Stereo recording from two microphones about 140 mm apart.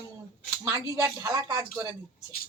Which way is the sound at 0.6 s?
20° right (ahead or behind).